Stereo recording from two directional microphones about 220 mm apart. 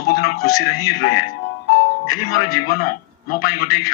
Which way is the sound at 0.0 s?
40° left (ahead or behind).